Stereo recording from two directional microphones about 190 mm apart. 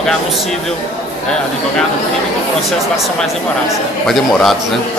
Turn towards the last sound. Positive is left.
turn(degrees=0)  # may be behind; listen again after turning